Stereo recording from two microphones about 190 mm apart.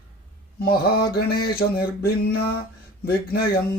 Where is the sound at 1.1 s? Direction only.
55° left (ahead or behind).